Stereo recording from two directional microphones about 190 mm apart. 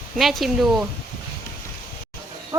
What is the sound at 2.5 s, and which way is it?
Horse, 20° right (ahead or behind).